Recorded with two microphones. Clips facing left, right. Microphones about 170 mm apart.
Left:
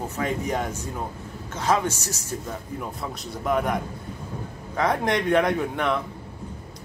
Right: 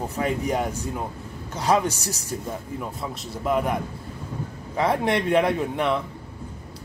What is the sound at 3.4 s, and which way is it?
Speech, 5° right (ahead or behind).